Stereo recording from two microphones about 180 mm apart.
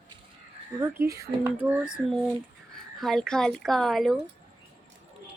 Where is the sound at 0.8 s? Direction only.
15° right (ahead or behind).